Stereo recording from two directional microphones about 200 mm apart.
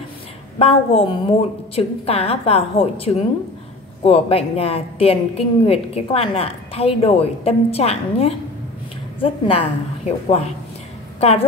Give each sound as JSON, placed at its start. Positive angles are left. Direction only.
{"t": 0.6, "sound": "a woman's voice", "side_deg": 30}